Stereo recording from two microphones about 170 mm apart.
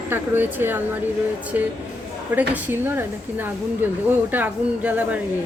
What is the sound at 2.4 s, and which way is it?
A woman's voice, 10° right (ahead or behind).